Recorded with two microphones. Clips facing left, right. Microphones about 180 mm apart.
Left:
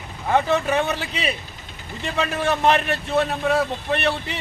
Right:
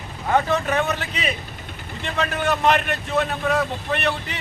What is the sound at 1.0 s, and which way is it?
Speech, 35° left (ahead or behind).